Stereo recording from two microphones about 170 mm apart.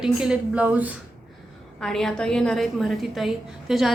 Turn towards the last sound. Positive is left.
turn(degrees=0)  # may be behind; listen again after turning